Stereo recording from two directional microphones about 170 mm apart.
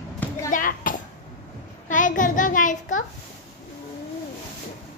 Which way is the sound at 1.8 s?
50° left (ahead or behind).